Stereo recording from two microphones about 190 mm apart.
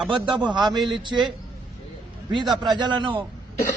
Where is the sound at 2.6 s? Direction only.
25° right (ahead or behind).